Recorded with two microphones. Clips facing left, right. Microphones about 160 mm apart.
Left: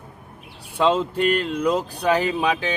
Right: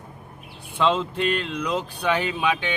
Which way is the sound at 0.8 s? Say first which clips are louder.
Left 3 dB; 40° left (ahead or behind).